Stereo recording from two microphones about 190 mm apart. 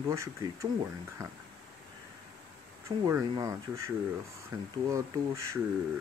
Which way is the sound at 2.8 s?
15° right (ahead or behind).